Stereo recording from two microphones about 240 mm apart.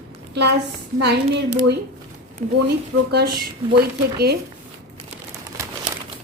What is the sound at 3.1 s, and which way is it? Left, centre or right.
Speech, right.